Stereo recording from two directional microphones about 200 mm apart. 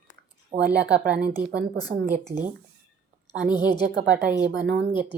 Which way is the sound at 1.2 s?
50° right (ahead or behind).